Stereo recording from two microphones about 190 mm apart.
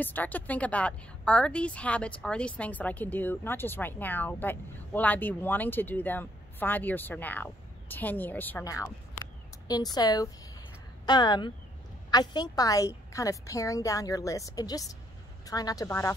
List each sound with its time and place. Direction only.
0.0 s a woman's voice: 10° left (ahead or behind)